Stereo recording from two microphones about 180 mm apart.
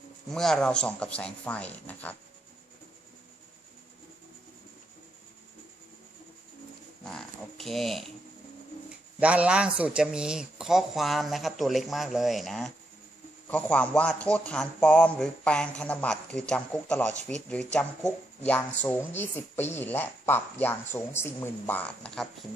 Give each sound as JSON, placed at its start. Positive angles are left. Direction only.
{"t": 0.3, "sound": "a man's voice", "side_deg": 0}
{"t": 7.0, "sound": "speech", "side_deg": 5}
{"t": 9.2, "sound": "a man's voice", "side_deg": -5}